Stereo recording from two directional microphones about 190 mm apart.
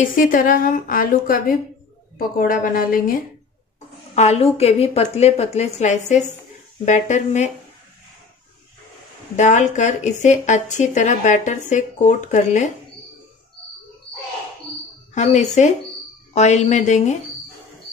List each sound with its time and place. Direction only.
0.0 s a woman's voice: 45° left (ahead or behind)
4.1 s a woman's voice: 35° left (ahead or behind)
9.4 s a woman's voice: 40° left (ahead or behind)
15.1 s a woman's voice: 35° left (ahead or behind)